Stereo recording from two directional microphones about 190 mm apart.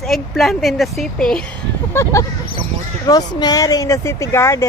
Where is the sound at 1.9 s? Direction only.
15° left (ahead or behind).